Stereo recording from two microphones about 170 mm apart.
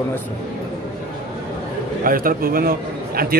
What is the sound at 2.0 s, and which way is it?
A man's voice, 55° right (ahead or behind).